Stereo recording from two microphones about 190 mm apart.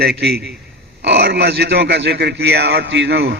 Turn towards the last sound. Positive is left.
turn(degrees=-65)  # may be behind; listen again after turning